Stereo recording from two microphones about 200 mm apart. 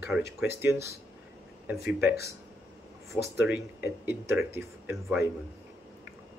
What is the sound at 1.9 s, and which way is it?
Speech, 55° left (ahead or behind).